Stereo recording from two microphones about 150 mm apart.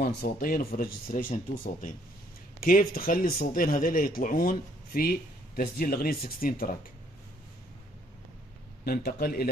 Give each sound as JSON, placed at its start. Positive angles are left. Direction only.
{"t": 0.0, "sound": "speech", "side_deg": 80}
{"t": 2.6, "sound": "speech", "side_deg": 75}
{"t": 5.6, "sound": "speech", "side_deg": 85}
{"t": 8.8, "sound": "a man's voice", "side_deg": 90}